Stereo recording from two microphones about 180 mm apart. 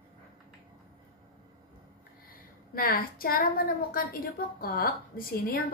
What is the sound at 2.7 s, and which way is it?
A woman's voice, 55° left (ahead or behind).